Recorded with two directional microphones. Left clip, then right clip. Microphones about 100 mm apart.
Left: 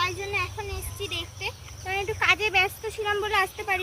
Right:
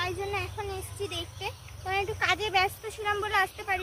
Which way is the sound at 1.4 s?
40° right (ahead or behind).